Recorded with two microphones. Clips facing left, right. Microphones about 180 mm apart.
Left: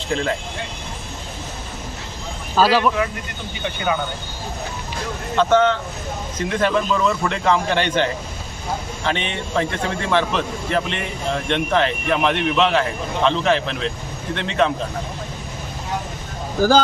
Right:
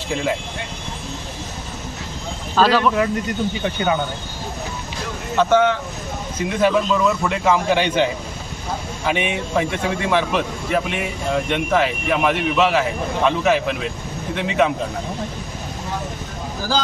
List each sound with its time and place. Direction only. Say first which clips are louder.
0.1 s speech: even; 5° right (ahead or behind)
2.6 s a man's voice: even; 5° left (ahead or behind)
5.4 s a man's voice: even; 10° right (ahead or behind)
16.6 s speech: left 8 dB; 50° left (ahead or behind)